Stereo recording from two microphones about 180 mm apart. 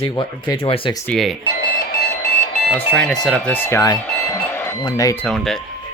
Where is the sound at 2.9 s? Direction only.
5° left (ahead or behind).